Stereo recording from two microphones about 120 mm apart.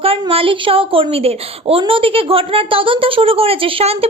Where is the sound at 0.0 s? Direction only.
50° right (ahead or behind).